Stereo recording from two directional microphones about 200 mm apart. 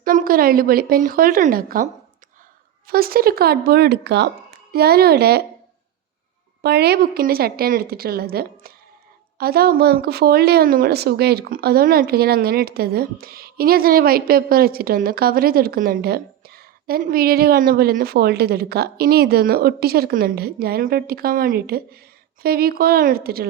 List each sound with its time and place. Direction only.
0.0 s speech: 45° right (ahead or behind)
6.6 s speech: 55° right (ahead or behind)